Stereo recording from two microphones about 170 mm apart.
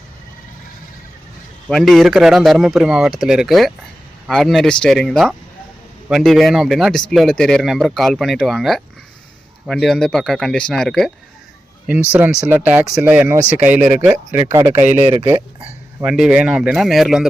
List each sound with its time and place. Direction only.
1.7 s speech: centre (ahead or behind)
12.1 s speech: 5° right (ahead or behind)
14.7 s speech: 45° right (ahead or behind)
15.0 s speech: 30° right (ahead or behind)
15.3 s a sound: 15° right (ahead or behind)
16.0 s speech: 5° right (ahead or behind)